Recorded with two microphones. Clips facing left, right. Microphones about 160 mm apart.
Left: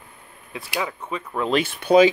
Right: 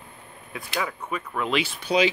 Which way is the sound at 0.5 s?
20° left (ahead or behind).